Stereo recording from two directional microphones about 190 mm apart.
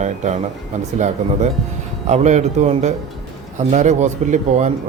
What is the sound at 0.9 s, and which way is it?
Speech, 40° right (ahead or behind).